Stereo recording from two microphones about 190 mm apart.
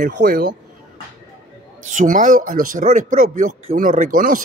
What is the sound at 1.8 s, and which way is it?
Speech, 40° right (ahead or behind).